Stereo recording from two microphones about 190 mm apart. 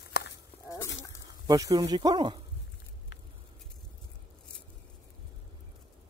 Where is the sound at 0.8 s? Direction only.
75° left (ahead or behind).